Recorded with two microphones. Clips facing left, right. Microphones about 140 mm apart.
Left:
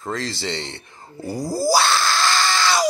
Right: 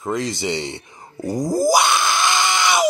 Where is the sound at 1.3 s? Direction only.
20° right (ahead or behind).